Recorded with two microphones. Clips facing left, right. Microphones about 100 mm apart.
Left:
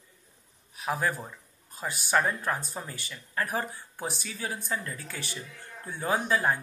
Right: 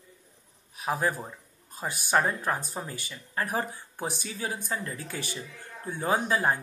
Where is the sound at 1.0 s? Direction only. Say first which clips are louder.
Right 1 dB; 20° right (ahead or behind).